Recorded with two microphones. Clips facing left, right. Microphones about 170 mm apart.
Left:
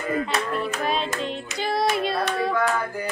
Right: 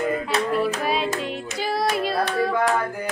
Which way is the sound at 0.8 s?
5° right (ahead or behind).